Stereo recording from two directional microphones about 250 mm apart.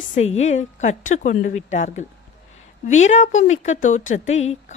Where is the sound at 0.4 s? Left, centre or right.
Left.